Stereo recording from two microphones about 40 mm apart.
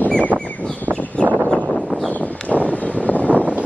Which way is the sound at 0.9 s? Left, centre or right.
Right.